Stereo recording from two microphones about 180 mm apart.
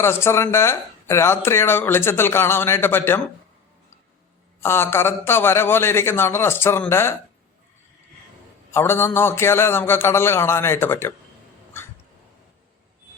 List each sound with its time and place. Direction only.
0.0 s speech: 15° left (ahead or behind)
4.6 s speech: 15° left (ahead or behind)
8.7 s speech: 15° left (ahead or behind)